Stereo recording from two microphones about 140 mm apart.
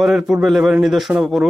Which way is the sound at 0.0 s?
Centre (ahead or behind).